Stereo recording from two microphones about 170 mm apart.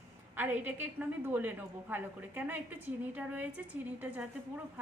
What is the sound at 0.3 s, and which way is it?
A woman's voice, 10° right (ahead or behind).